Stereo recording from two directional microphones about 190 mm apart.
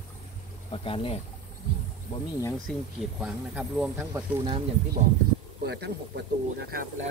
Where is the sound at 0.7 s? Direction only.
30° left (ahead or behind).